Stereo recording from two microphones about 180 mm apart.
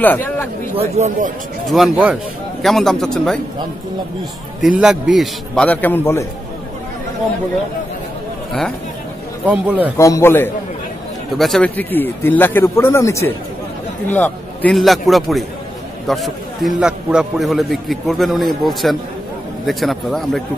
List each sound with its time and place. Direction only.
0.0 s a sound: 10° left (ahead or behind)
0.7 s speech: 40° right (ahead or behind)
1.7 s a man's voice: 5° right (ahead or behind)
4.6 s a man's voice: 5° right (ahead or behind); by 6.2 s 10° left (ahead or behind)
9.5 s a man's voice: 10° right (ahead or behind)
9.9 s speech: 15° left (ahead or behind)
11.3 s a man's voice: centre (ahead or behind)